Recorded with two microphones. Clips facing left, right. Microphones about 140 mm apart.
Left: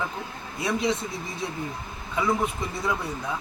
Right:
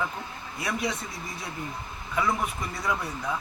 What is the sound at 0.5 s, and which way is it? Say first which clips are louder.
Speech: left 5 dB; 25° left (ahead or behind).